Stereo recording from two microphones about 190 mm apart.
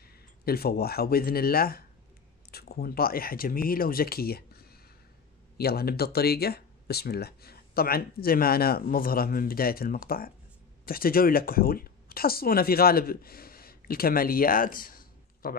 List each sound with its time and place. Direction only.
0.0 s speech: 55° left (ahead or behind)